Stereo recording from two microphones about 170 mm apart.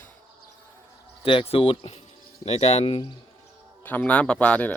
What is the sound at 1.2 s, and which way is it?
Speech, 35° left (ahead or behind).